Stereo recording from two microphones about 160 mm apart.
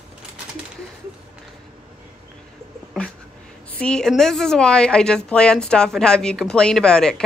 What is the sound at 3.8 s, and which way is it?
A woman's voice, 5° left (ahead or behind).